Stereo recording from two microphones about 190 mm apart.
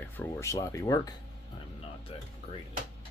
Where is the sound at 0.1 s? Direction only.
10° left (ahead or behind).